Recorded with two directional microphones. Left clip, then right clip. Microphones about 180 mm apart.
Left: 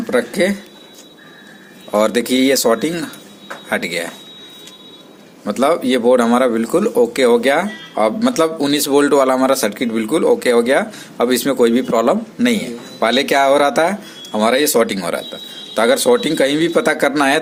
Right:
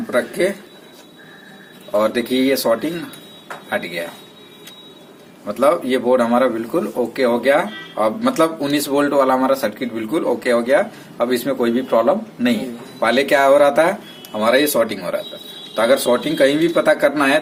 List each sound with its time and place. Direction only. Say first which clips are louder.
0.1 s speech: left 2 dB; 45° left (ahead or behind)
1.9 s speech: left 3 dB; 45° left (ahead or behind)
5.5 s speech: left 1 dB; 45° left (ahead or behind)